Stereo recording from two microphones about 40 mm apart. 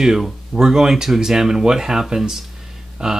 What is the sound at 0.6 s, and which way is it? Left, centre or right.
Speech, centre.